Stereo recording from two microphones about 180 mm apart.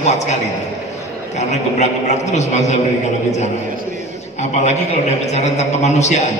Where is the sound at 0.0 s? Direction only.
40° left (ahead or behind).